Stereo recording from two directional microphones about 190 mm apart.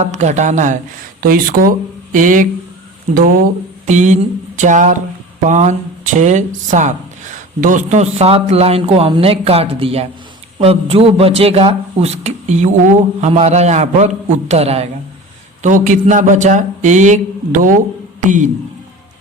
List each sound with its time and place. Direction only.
0.0 s a man's voice: 40° right (ahead or behind)
3.8 s a man's voice: 40° right (ahead or behind)